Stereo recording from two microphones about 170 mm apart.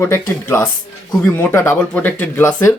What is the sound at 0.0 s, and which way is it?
Speech, 15° left (ahead or behind).